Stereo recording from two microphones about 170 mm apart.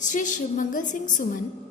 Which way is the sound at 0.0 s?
50° left (ahead or behind).